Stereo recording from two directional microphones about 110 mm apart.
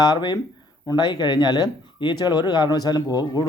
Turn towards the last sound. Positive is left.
turn(degrees=40)  # may be behind; listen again after turning